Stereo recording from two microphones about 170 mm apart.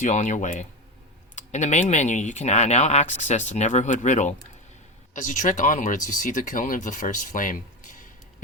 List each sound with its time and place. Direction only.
0.0 s speech: 45° left (ahead or behind)